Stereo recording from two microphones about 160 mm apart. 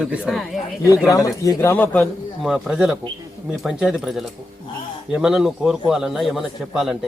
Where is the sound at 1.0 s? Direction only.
20° left (ahead or behind).